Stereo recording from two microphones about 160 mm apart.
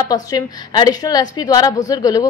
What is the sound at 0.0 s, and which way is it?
A woman's voice, 25° left (ahead or behind).